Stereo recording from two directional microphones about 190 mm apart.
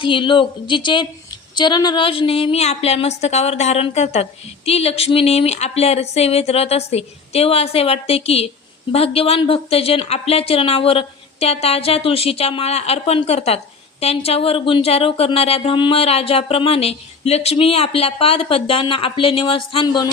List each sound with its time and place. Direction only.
0.0 s a woman's voice: 25° left (ahead or behind)